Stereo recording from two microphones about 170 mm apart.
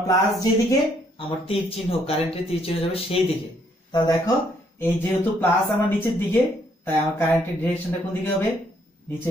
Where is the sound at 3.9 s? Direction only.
25° left (ahead or behind).